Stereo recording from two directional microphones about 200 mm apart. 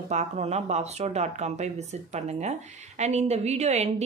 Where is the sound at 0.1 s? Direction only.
35° right (ahead or behind).